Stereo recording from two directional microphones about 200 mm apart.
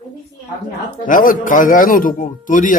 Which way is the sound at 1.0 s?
40° left (ahead or behind).